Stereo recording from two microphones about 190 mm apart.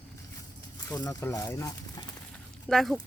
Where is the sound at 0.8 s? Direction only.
20° left (ahead or behind).